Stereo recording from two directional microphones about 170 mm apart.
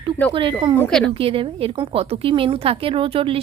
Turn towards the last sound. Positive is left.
turn(degrees=-35)  # may be behind; listen again after turning